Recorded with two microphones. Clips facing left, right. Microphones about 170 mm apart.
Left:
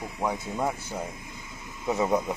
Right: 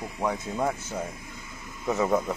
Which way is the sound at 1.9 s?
15° left (ahead or behind).